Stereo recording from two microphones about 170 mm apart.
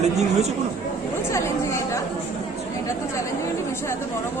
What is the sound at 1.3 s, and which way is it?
Chatter, 15° left (ahead or behind).